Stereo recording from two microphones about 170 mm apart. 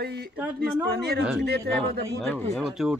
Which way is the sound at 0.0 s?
70° right (ahead or behind).